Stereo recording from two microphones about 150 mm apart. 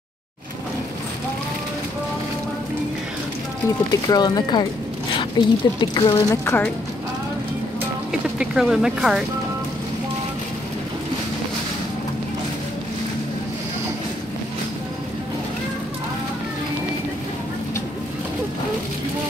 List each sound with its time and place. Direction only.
3.9 s speech: 25° left (ahead or behind)
6.4 s a woman's voice: 15° left (ahead or behind)
8.1 s speech: 5° right (ahead or behind)